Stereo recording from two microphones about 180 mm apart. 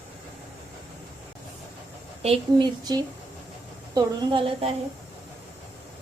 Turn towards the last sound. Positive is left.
turn(degrees=-30)  # may be behind; listen again after turning